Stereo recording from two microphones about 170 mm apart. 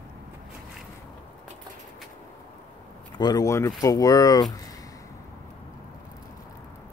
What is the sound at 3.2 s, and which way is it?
Speech, 25° left (ahead or behind).